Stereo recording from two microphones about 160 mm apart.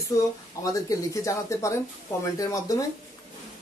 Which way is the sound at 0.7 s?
20° left (ahead or behind).